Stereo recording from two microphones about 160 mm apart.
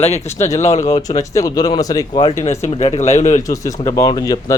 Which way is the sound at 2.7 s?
45° left (ahead or behind).